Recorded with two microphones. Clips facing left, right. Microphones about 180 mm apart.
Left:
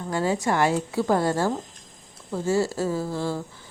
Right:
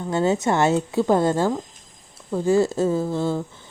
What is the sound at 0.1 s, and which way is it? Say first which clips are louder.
A woman's voice: right 4 dB; 25° right (ahead or behind).